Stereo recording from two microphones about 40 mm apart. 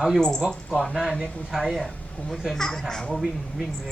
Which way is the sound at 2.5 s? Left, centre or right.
Centre.